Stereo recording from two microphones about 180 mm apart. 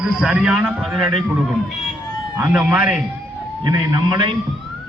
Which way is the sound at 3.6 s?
20° right (ahead or behind).